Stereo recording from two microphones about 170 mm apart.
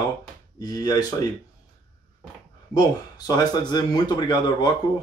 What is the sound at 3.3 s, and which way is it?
Speech, 25° left (ahead or behind).